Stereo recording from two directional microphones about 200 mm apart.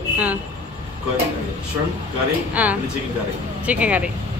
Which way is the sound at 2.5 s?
5° right (ahead or behind).